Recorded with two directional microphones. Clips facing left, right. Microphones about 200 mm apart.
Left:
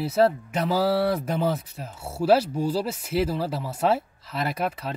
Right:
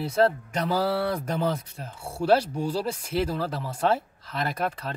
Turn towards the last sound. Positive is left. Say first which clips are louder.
# left 1 dB
turn(degrees=5)  # may be behind; listen again after turning